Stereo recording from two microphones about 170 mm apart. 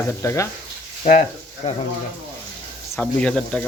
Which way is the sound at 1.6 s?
40° left (ahead or behind).